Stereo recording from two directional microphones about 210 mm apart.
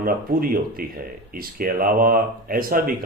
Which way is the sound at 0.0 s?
45° right (ahead or behind).